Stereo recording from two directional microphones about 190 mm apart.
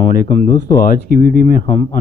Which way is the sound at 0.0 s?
45° left (ahead or behind).